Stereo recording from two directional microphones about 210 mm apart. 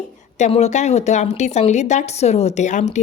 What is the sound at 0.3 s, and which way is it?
A woman's voice, 30° left (ahead or behind).